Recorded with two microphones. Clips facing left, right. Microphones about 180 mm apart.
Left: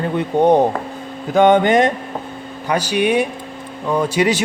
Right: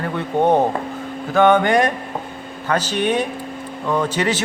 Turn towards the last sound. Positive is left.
turn(degrees=10)  # may be behind; listen again after turning